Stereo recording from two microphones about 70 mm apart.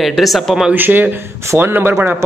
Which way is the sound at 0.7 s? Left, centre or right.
Right.